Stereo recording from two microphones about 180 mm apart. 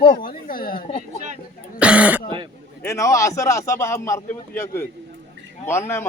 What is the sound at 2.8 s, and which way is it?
A man's voice, 15° left (ahead or behind).